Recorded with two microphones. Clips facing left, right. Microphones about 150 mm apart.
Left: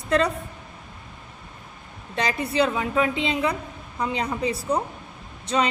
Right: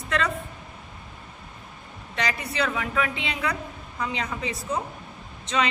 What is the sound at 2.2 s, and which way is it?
A woman's voice, 30° left (ahead or behind).